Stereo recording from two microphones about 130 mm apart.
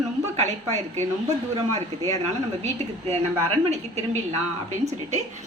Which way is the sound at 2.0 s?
60° right (ahead or behind).